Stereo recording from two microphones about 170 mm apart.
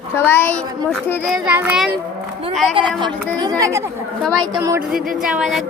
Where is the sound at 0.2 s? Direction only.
15° left (ahead or behind).